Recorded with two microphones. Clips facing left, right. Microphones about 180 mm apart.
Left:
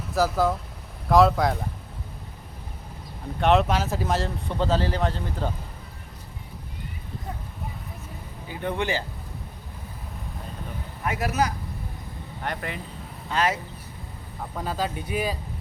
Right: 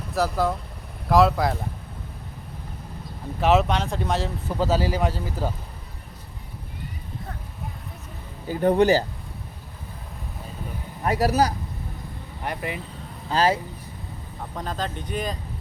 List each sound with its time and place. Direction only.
0.1 s speech: centre (ahead or behind)
3.4 s speech: centre (ahead or behind)
8.4 s speech: 40° right (ahead or behind)
11.0 s speech: 35° right (ahead or behind)
12.5 s speech: 10° right (ahead or behind)
13.3 s speech: 30° right (ahead or behind)
14.5 s speech: 5° left (ahead or behind)